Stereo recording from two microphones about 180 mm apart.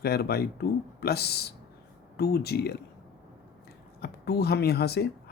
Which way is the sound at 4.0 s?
60° left (ahead or behind).